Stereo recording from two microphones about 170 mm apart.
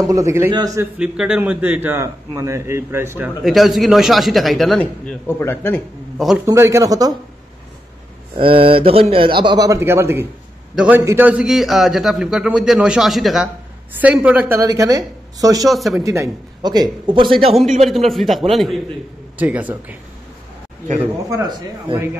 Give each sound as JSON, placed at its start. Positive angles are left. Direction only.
{"t": 0.0, "sound": "a man's voice", "side_deg": -20}
{"t": 0.7, "sound": "a man's voice", "side_deg": -5}
{"t": 3.4, "sound": "a man's voice", "side_deg": 0}
{"t": 6.1, "sound": "a man's voice", "side_deg": -5}
{"t": 6.4, "sound": "a man's voice", "side_deg": -15}
{"t": 8.4, "sound": "a man's voice", "side_deg": -30}
{"t": 14.6, "sound": "a man's voice", "side_deg": -20}
{"t": 15.7, "sound": "a man's voice", "side_deg": 0}
{"t": 16.0, "sound": "a man's voice", "side_deg": -20}
{"t": 17.8, "sound": "a man's voice", "side_deg": 0}
{"t": 21.3, "sound": "a man's voice", "side_deg": -20}